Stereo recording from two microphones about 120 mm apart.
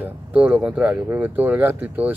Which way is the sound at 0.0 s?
10° right (ahead or behind).